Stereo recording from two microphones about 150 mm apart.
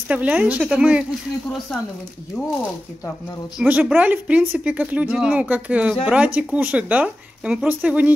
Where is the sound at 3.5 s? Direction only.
10° right (ahead or behind).